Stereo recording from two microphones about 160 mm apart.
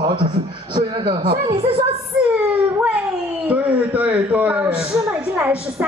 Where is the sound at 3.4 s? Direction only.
10° right (ahead or behind).